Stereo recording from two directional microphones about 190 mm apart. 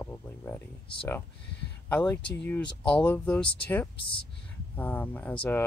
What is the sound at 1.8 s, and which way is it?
Speech, 10° left (ahead or behind).